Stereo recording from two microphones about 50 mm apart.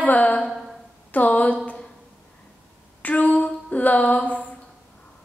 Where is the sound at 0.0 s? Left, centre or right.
Left.